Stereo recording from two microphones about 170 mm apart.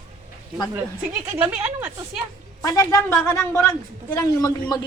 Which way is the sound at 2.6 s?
20° left (ahead or behind).